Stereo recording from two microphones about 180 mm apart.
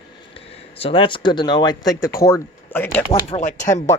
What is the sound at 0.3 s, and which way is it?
Speech, 30° left (ahead or behind).